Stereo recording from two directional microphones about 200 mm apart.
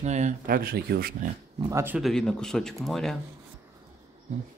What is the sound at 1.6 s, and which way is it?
Speech, 15° right (ahead or behind).